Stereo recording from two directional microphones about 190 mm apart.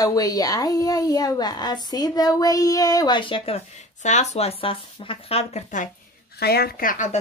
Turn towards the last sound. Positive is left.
turn(degrees=45)  # may be behind; listen again after turning